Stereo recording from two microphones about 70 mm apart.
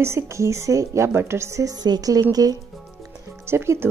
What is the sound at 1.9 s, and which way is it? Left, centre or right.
Speech, right.